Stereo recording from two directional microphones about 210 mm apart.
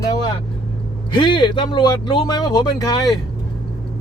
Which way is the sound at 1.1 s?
25° left (ahead or behind).